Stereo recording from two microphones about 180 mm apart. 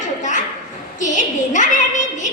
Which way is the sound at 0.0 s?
45° left (ahead or behind).